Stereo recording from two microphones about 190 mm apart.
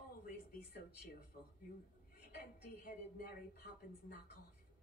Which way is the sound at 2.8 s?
50° left (ahead or behind).